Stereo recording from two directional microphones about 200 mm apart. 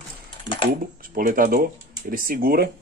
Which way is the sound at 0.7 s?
45° right (ahead or behind).